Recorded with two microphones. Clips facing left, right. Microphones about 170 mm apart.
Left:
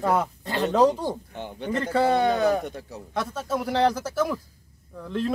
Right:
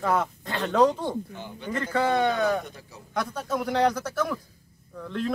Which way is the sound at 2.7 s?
65° left (ahead or behind).